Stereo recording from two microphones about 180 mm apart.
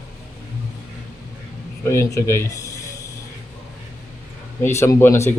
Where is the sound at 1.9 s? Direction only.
15° left (ahead or behind).